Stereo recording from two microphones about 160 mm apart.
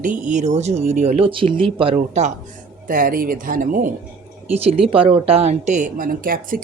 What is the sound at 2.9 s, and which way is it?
Speech, 65° right (ahead or behind).